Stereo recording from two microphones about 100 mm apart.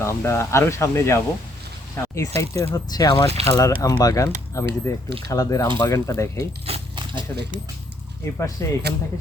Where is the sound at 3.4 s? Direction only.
90° right.